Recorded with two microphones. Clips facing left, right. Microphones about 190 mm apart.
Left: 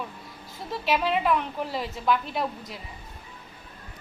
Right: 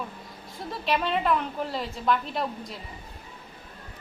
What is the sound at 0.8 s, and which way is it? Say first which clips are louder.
A woman's voice: left 1 dB; 5° left (ahead or behind).